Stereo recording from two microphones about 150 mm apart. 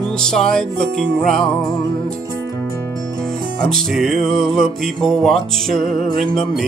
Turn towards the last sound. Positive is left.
turn(degrees=0)  # may be behind; listen again after turning